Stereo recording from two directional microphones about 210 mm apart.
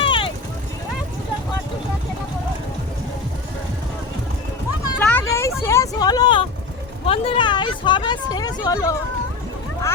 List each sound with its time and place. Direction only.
0.0 s vehicle: 25° left (ahead or behind)
4.9 s vehicle: 10° left (ahead or behind)
7.1 s a sound: 25° left (ahead or behind)
8.4 s speech: 20° left (ahead or behind)